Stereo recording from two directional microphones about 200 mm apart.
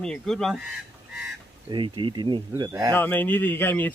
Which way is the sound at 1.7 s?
25° right (ahead or behind).